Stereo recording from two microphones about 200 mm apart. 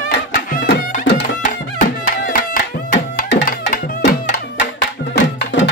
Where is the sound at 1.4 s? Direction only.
40° left (ahead or behind).